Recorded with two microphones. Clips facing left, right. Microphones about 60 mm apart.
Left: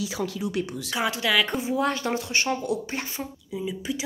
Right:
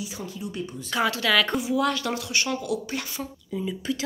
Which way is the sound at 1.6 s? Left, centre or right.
Left.